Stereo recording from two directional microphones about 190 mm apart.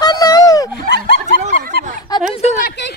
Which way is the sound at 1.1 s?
50° right (ahead or behind).